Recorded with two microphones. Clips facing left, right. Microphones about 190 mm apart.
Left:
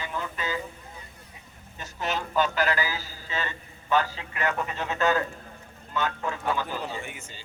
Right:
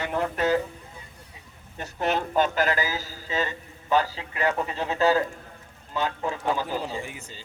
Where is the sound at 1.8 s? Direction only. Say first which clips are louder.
Right 5 dB; 55° right (ahead or behind); by 7.3 s 35° right (ahead or behind).